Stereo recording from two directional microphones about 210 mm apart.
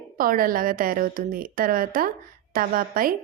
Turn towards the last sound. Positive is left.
turn(degrees=-40)  # may be behind; listen again after turning